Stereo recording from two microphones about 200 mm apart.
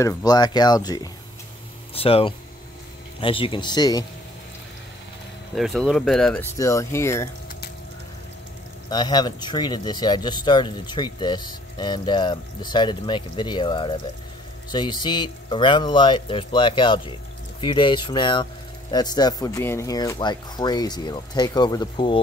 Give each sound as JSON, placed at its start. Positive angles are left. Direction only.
{"t": 0.0, "sound": "speech", "side_deg": 15}
{"t": 2.0, "sound": "speech", "side_deg": 30}
{"t": 5.6, "sound": "speech", "side_deg": 0}
{"t": 6.6, "sound": "speech", "side_deg": 15}
{"t": 8.9, "sound": "speech", "side_deg": 20}